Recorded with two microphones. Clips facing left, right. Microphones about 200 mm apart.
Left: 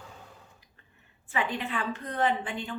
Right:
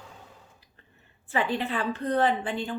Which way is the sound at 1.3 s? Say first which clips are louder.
Right 4 dB; 35° right (ahead or behind).